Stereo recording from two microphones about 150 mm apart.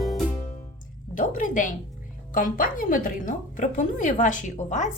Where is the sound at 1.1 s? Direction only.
60° left (ahead or behind).